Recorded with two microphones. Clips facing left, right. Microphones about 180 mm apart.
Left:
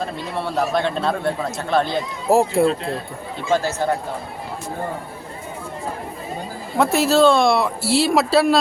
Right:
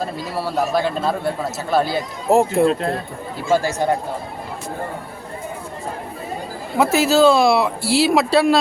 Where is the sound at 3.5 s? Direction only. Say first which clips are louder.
Right 2 dB; 15° right (ahead or behind).